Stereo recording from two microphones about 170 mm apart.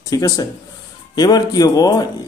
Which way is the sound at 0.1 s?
20° left (ahead or behind).